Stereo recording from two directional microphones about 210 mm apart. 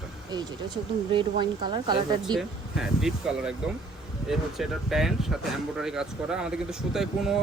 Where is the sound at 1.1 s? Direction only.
20° right (ahead or behind).